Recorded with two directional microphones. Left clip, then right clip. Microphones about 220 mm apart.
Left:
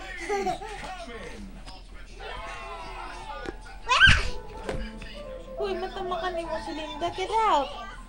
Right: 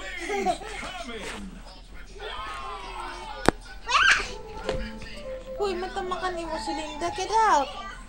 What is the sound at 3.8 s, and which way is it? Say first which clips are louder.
Baby laughter: left 2 dB; 25° left (ahead or behind).